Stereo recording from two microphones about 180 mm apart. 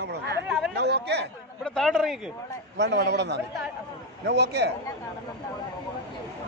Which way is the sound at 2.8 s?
70° right (ahead or behind).